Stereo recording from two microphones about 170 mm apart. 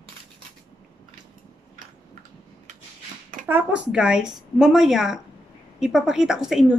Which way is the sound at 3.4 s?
10° right (ahead or behind).